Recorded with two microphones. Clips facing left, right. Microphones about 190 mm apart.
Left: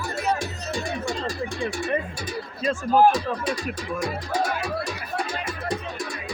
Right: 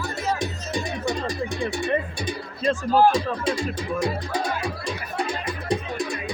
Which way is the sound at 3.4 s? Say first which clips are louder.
Right 3 dB; 25° right (ahead or behind).